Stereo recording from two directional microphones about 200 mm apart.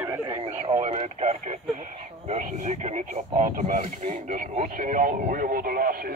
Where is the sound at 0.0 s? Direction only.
15° right (ahead or behind).